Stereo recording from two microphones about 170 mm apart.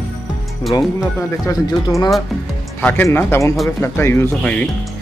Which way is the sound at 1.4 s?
20° left (ahead or behind).